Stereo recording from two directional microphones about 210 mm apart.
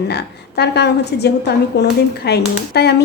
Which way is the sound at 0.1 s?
50° left (ahead or behind).